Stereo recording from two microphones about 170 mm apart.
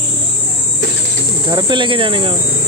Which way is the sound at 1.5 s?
25° right (ahead or behind).